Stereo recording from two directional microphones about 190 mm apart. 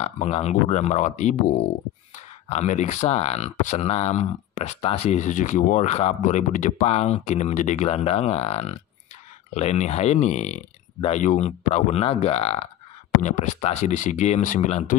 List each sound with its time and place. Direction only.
0.0 s speech: 35° left (ahead or behind)